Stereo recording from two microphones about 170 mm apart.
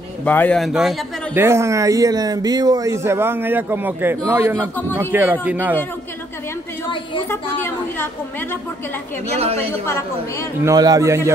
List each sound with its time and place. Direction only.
0.2 s a man's voice: 10° left (ahead or behind)
1.3 s speech: 15° right (ahead or behind)
7.2 s a woman's voice: 10° left (ahead or behind)
9.4 s a woman's voice: 35° right (ahead or behind)
9.7 s a woman's voice: 15° left (ahead or behind)
10.6 s speech: 20° right (ahead or behind)